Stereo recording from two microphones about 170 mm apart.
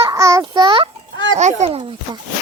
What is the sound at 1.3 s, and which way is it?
Speech, 40° right (ahead or behind).